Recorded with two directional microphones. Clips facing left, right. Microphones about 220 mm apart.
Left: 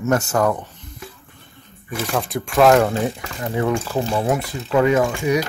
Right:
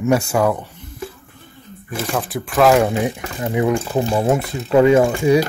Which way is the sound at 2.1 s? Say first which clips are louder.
Even; centre (ahead or behind).